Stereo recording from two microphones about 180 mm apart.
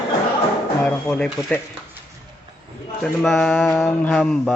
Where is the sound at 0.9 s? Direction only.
5° left (ahead or behind).